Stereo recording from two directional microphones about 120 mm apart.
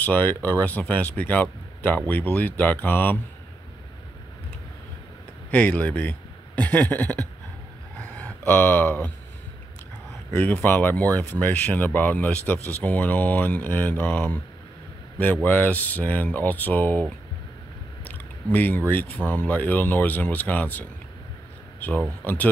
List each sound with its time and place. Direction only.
0.0 s speech: 15° left (ahead or behind)
5.5 s speech: 10° left (ahead or behind)
8.0 s a sound: 15° left (ahead or behind)
10.3 s speech: 15° left (ahead or behind)
15.4 s speech: 15° left (ahead or behind)
18.0 s speech: 15° left (ahead or behind)